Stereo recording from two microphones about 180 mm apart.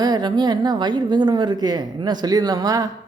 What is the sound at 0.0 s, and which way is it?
A woman's voice, 25° right (ahead or behind).